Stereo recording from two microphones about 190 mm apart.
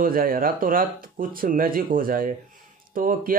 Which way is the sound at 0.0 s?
50° right (ahead or behind).